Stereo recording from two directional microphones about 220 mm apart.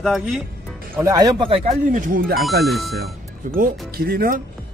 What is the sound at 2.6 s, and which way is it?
Speech, centre (ahead or behind).